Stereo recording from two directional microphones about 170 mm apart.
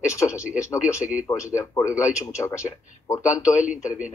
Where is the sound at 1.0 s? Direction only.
5° right (ahead or behind).